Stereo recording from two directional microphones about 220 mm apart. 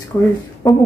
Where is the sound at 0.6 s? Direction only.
15° left (ahead or behind).